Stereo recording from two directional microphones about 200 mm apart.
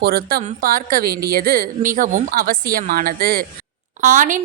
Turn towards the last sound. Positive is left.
turn(degrees=-40)  # may be behind; listen again after turning